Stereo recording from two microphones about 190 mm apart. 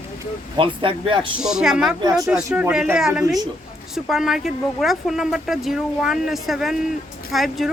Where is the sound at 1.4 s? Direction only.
5° right (ahead or behind).